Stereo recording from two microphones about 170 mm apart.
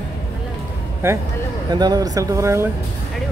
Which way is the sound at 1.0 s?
15° right (ahead or behind).